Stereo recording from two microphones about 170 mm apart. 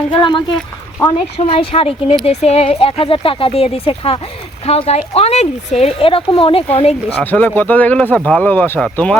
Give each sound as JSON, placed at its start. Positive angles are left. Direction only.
{"t": 0.1, "sound": "speech", "side_deg": 30}
{"t": 1.4, "sound": "speech", "side_deg": 35}
{"t": 7.2, "sound": "speech", "side_deg": 10}